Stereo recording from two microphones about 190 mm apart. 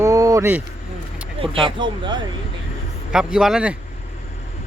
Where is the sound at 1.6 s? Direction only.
25° right (ahead or behind).